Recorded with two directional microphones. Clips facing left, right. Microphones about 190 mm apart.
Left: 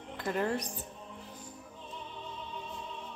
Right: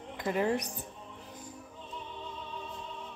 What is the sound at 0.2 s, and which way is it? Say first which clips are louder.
Speech: right 2 dB; 10° right (ahead or behind).